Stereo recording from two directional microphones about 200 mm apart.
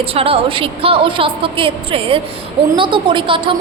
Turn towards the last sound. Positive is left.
turn(degrees=-25)  # may be behind; listen again after turning